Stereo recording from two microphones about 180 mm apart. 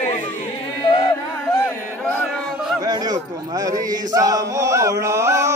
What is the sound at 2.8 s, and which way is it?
Chant, 20° right (ahead or behind).